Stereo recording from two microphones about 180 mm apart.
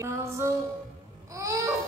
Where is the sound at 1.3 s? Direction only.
15° right (ahead or behind).